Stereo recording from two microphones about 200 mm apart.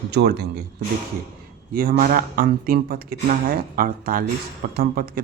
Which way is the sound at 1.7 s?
45° right (ahead or behind).